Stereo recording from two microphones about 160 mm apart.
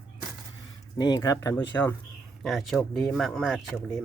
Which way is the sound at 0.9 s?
25° left (ahead or behind).